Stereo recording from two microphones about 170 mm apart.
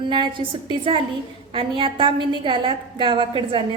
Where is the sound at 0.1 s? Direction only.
25° right (ahead or behind).